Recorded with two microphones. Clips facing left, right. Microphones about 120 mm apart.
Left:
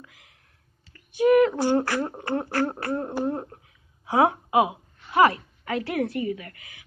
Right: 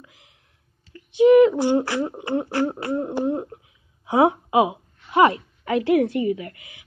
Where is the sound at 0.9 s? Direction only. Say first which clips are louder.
Right 5 dB; 20° right (ahead or behind).